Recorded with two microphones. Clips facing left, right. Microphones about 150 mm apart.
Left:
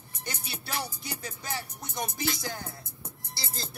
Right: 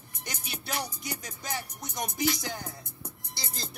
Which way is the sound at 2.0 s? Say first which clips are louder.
Right 3 dB; 15° right (ahead or behind).